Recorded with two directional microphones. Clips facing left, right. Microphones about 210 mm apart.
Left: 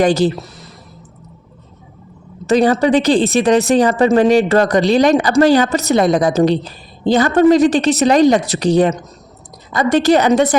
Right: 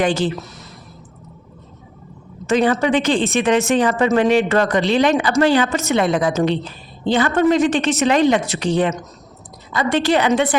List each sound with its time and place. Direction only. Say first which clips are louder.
0.0 s speech: left 5 dB; 40° left (ahead or behind)
2.5 s speech: left 4 dB; 35° left (ahead or behind)